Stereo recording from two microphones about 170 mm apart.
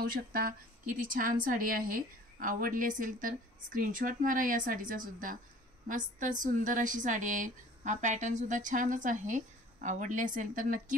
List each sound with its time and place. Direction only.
0.0 s a woman's voice: 60° right (ahead or behind)